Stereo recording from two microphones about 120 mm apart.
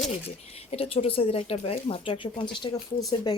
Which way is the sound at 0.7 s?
55° left (ahead or behind).